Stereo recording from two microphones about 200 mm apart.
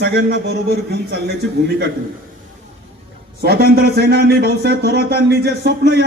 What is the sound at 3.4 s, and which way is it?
A man's voice, 50° right (ahead or behind).